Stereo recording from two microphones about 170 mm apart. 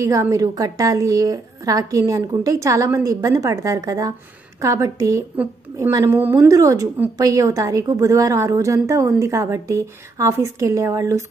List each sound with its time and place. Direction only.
0.0 s a woman's voice: 20° right (ahead or behind)